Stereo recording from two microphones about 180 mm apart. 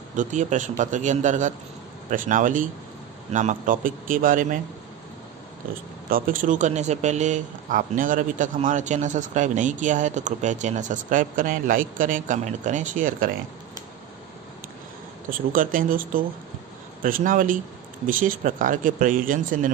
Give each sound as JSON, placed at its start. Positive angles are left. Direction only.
{"t": 0.1, "sound": "speech", "side_deg": -45}
{"t": 6.0, "sound": "speech", "side_deg": -50}
{"t": 15.2, "sound": "speech", "side_deg": -50}